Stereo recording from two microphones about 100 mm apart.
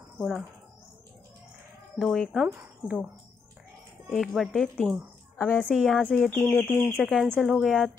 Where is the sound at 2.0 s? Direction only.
Centre (ahead or behind).